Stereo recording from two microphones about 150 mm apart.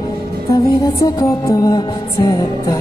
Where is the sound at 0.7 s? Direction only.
25° left (ahead or behind).